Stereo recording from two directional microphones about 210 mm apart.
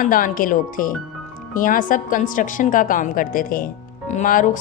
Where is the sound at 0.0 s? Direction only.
40° left (ahead or behind).